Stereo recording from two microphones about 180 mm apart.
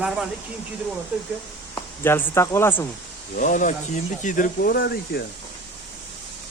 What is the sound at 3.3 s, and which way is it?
Speech, 45° left (ahead or behind).